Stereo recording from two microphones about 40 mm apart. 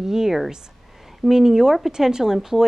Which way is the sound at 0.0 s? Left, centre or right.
Centre.